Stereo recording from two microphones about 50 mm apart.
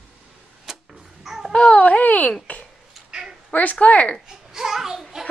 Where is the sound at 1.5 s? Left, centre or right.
Left.